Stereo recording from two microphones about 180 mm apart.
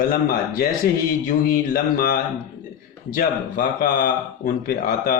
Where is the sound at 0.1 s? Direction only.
55° left (ahead or behind).